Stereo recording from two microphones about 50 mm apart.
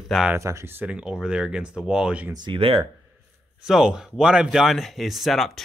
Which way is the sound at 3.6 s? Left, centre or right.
Centre.